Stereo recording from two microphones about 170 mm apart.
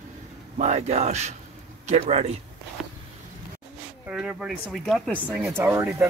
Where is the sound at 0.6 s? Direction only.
40° right (ahead or behind).